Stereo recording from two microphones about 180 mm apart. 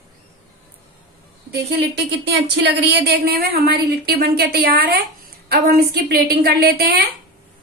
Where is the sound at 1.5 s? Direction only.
65° right (ahead or behind).